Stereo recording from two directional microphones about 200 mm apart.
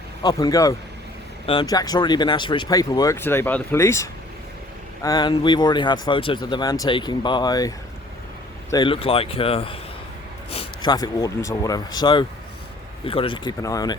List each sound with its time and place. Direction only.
0.2 s speech: 20° left (ahead or behind)
8.7 s speech: 25° left (ahead or behind)